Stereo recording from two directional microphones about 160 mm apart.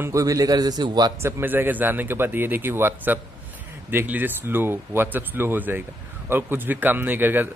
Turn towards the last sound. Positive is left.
turn(degrees=-10)  # may be behind; listen again after turning